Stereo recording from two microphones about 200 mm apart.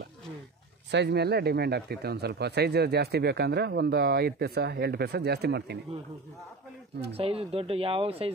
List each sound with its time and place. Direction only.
0.9 s speech: 55° right (ahead or behind)
7.1 s speech: 30° right (ahead or behind)